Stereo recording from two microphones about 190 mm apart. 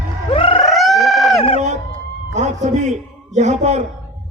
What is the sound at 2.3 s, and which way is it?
Speech, 40° right (ahead or behind).